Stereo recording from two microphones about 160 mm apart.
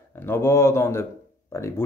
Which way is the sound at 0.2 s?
15° left (ahead or behind).